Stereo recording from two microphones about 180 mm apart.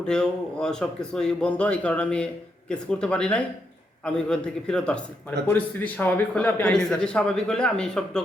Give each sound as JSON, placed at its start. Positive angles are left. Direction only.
{"t": 0.0, "sound": "a man's voice", "side_deg": 5}